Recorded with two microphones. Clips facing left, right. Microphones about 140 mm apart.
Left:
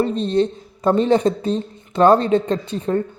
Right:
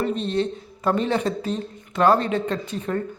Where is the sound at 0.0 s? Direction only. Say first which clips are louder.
Left 5 dB; 35° left (ahead or behind).